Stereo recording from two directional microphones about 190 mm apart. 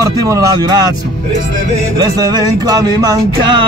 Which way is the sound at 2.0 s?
20° right (ahead or behind).